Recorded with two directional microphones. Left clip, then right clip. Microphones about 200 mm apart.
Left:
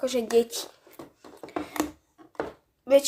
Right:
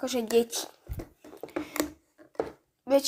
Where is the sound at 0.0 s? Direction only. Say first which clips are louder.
Left 3 dB; 5° right (ahead or behind).